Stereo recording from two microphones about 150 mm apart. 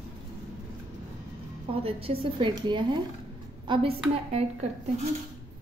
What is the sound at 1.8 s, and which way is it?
A woman's voice, 40° right (ahead or behind).